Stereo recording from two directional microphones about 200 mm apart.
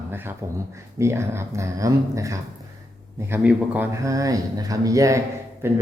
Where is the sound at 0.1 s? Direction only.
10° right (ahead or behind).